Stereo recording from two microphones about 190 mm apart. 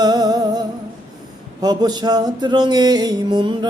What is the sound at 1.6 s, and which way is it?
Music, 20° right (ahead or behind).